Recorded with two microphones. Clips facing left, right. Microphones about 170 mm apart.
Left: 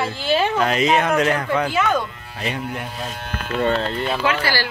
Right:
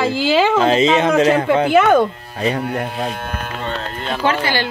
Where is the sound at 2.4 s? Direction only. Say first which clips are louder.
Right 7 dB; 40° right (ahead or behind).